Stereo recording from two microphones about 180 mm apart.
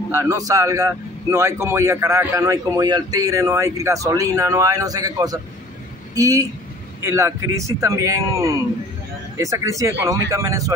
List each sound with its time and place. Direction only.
0.1 s a man's voice: 15° right (ahead or behind)